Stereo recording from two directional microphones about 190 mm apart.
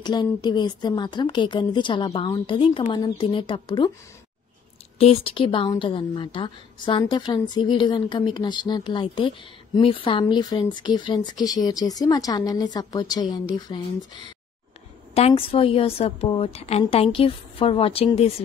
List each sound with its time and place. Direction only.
0.0 s a woman's voice: 20° left (ahead or behind)
4.9 s a woman's voice: 30° left (ahead or behind)
15.1 s a woman's voice: 30° left (ahead or behind)